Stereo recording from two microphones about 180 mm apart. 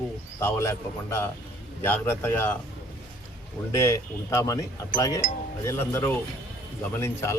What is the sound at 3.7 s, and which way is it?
Speech, 15° left (ahead or behind).